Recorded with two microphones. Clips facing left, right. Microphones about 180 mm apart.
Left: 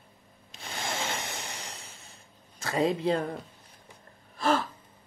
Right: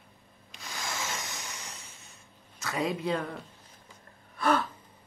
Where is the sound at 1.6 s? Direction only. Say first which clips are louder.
Left 3 dB; 35° left (ahead or behind).